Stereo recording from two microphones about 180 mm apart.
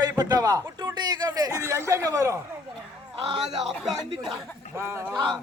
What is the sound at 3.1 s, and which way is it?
Speech, 30° right (ahead or behind).